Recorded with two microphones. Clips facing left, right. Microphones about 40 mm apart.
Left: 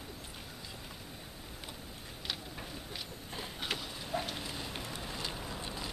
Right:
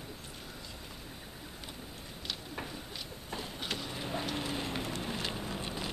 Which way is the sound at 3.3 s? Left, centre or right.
Centre.